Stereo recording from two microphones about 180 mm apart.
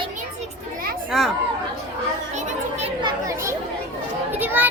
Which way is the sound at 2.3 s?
40° right (ahead or behind).